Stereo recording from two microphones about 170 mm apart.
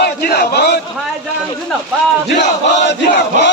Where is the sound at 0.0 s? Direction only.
65° left (ahead or behind).